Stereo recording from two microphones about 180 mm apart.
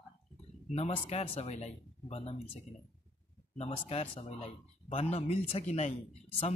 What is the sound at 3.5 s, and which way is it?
A man's voice, 35° left (ahead or behind).